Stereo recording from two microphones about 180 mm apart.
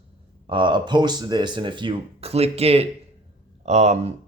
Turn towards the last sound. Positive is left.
turn(degrees=-40)  # may be behind; listen again after turning